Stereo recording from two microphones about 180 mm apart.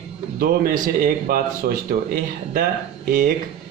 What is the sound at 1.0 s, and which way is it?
Speech, 55° right (ahead or behind).